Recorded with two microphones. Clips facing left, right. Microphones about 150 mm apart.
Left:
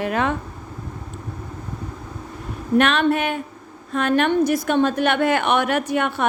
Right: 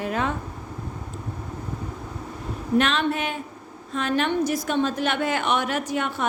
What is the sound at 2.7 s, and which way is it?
A woman's voice, 60° left (ahead or behind).